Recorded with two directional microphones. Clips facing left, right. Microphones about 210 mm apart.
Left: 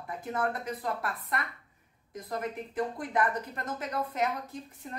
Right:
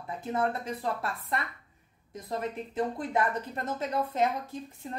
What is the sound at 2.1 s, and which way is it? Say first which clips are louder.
Speech: right 1 dB; 25° right (ahead or behind).